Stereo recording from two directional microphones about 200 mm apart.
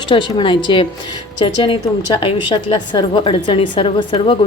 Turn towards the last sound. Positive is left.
turn(degrees=25)  # may be behind; listen again after turning